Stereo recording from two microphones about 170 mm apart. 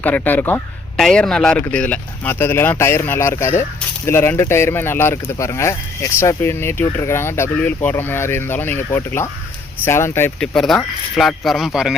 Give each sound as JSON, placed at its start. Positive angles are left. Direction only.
{"t": 0.0, "sound": "speech", "side_deg": 10}